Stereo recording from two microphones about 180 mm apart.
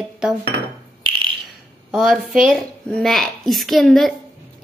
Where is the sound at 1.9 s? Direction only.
5° right (ahead or behind).